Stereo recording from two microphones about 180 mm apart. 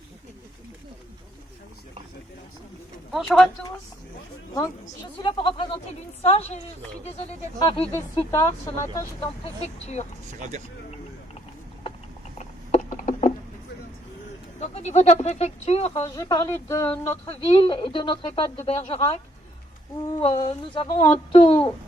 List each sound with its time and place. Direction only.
3.1 s speech: centre (ahead or behind)
5.2 s speech: 30° left (ahead or behind)
7.9 s speech: 15° left (ahead or behind)
9.8 s speech: 35° left (ahead or behind)
12.4 s a sound: 45° left (ahead or behind)
14.6 s speech: 35° left (ahead or behind)
16.0 s speech: 20° left (ahead or behind)
17.2 s speech: 25° left (ahead or behind)